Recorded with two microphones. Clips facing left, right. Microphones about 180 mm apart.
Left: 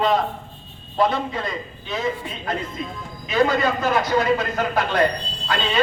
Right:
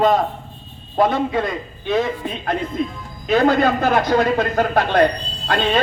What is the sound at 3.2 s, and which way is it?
A man's voice, 55° right (ahead or behind).